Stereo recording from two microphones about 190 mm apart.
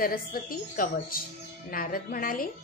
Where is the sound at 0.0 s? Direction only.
50° left (ahead or behind).